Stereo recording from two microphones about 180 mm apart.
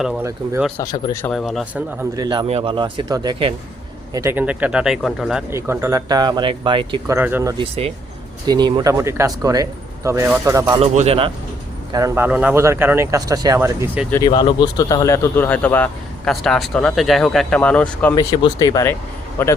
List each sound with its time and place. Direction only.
0.2 s speech: 15° right (ahead or behind)
0.8 s speech: 20° left (ahead or behind)
1.2 s speech: centre (ahead or behind)
2.1 s speech: 20° right (ahead or behind)
4.1 s speech: 15° right (ahead or behind)
5.5 s speech: 15° right (ahead or behind)
7.2 s speech: 10° right (ahead or behind)
7.6 s speech: 35° right (ahead or behind)
10.8 s speech: 35° right (ahead or behind)
11.9 s speech: 20° right (ahead or behind)
14.3 s speech: 25° left (ahead or behind); by 18.1 s 10° left (ahead or behind)
18.1 s speech: 20° left (ahead or behind)